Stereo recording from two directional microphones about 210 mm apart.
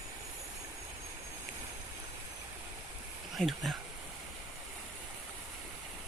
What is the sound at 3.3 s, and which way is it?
Speech, centre (ahead or behind).